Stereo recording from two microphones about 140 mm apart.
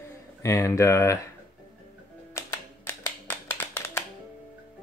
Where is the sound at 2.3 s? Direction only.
20° left (ahead or behind).